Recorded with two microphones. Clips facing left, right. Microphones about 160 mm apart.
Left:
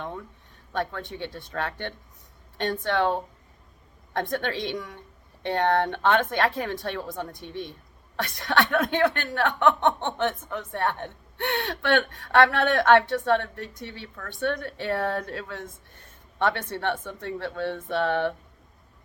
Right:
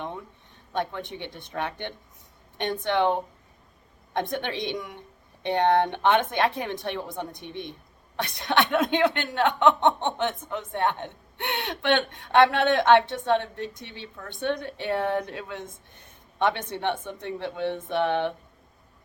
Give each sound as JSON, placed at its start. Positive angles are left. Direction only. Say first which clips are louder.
{"t": 0.7, "sound": "speech", "louder": "even", "side_deg": -20}